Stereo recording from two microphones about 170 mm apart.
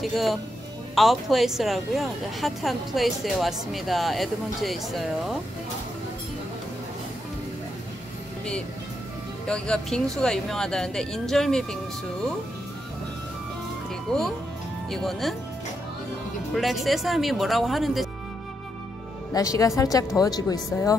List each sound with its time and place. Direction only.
0.0 s speech: centre (ahead or behind)
9.5 s speech: 5° left (ahead or behind)
14.1 s speech: 5° left (ahead or behind)
16.5 s speech: centre (ahead or behind)
19.3 s speech: 20° left (ahead or behind)